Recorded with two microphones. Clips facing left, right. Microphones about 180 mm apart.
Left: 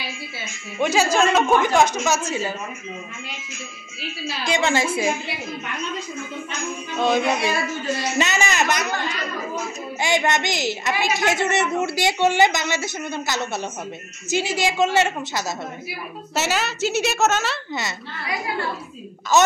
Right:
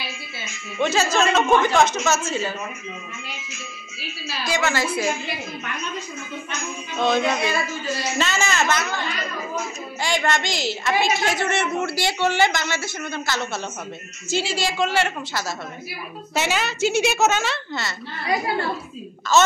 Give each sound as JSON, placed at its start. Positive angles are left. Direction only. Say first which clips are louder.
{"t": 0.7, "sound": "a woman's voice", "louder": "left 1 dB", "side_deg": 10}
{"t": 4.5, "sound": "a man's voice", "louder": "left 2 dB", "side_deg": 20}
{"t": 7.0, "sound": "a woman's voice", "louder": "left 1 dB", "side_deg": 10}
{"t": 9.9, "sound": "a man's voice", "louder": "left 2 dB", "side_deg": 20}
{"t": 16.3, "sound": "a woman's voice", "louder": "even", "side_deg": 5}
{"t": 19.3, "sound": "a woman's voice", "louder": "left 1 dB", "side_deg": 15}